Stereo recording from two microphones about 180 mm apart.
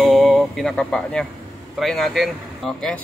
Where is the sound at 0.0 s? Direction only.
Centre (ahead or behind).